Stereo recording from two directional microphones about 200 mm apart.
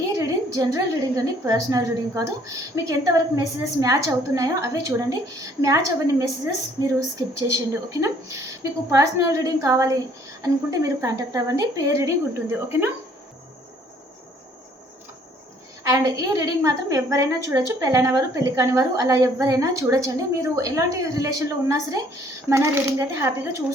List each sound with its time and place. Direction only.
0.2 s a woman's voice: 15° right (ahead or behind)
7.3 s a woman's voice: 15° right (ahead or behind)
15.8 s a woman's voice: 15° right (ahead or behind)